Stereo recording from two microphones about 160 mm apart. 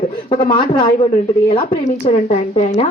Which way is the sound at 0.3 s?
30° left (ahead or behind).